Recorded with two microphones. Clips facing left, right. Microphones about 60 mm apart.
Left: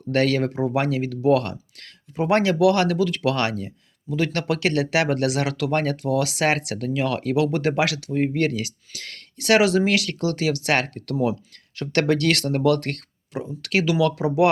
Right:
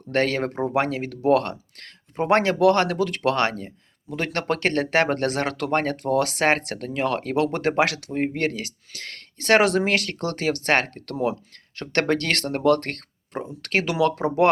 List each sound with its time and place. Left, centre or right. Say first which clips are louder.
0.1 s speech: left 2 dB; right
4.1 s speech: left 2 dB; right
8.1 s speech: left 3 dB; right